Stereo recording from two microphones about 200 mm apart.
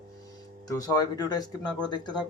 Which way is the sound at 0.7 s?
20° left (ahead or behind).